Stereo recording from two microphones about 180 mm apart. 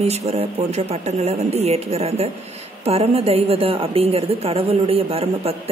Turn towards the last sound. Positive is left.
turn(degrees=-35)  # may be behind; listen again after turning